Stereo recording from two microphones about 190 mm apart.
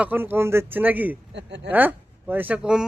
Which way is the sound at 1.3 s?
65° right (ahead or behind).